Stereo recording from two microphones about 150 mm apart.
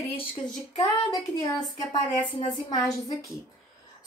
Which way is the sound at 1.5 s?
25° left (ahead or behind).